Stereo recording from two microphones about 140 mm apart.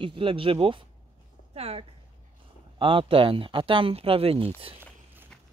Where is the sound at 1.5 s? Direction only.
45° right (ahead or behind).